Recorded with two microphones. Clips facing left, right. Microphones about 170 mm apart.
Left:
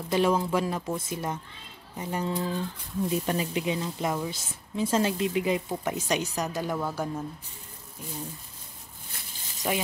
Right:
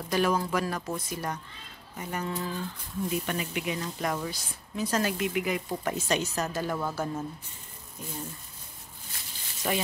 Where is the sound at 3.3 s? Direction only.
30° left (ahead or behind).